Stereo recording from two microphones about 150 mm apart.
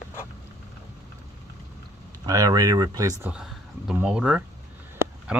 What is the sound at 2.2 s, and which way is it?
Speech, 25° right (ahead or behind).